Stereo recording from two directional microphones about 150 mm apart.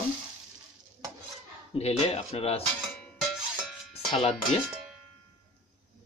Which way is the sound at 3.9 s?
45° left (ahead or behind).